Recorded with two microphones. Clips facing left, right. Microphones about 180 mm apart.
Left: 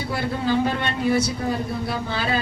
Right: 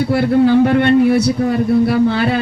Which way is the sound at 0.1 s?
65° right (ahead or behind).